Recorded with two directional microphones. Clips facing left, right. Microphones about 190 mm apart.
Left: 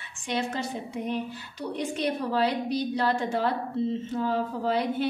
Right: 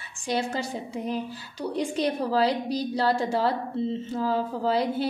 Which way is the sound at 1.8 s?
35° right (ahead or behind).